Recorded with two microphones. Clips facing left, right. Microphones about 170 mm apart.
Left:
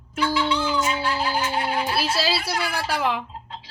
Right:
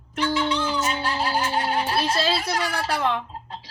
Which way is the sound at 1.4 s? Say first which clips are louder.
Even; 40° right (ahead or behind).